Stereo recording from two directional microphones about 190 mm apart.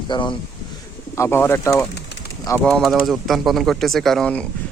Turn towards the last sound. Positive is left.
turn(degrees=5)  # may be behind; listen again after turning